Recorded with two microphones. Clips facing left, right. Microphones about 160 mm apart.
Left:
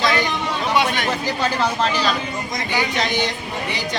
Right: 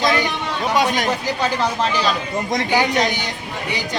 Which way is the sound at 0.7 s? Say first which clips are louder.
Right 2 dB; 40° right (ahead or behind).